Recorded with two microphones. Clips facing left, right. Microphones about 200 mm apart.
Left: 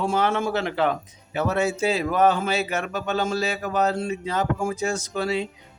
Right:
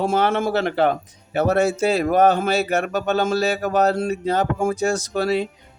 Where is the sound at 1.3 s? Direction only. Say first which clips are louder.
Right 5 dB; 45° right (ahead or behind).